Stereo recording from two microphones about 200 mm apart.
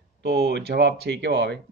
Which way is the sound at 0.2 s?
55° right (ahead or behind).